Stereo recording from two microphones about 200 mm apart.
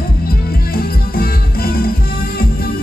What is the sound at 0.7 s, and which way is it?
Music, 50° left (ahead or behind).